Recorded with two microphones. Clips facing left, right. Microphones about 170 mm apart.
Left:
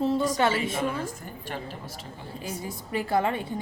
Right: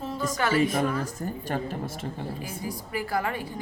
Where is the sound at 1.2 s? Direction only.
45° right (ahead or behind).